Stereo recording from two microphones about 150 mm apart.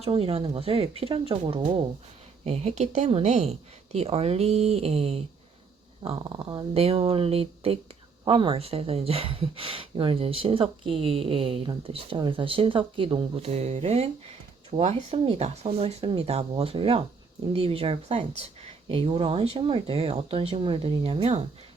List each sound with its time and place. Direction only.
0.0 s speech: 40° right (ahead or behind)
6.2 s speech: 30° right (ahead or behind)